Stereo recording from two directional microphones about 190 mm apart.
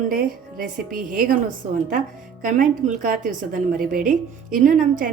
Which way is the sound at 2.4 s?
45° right (ahead or behind).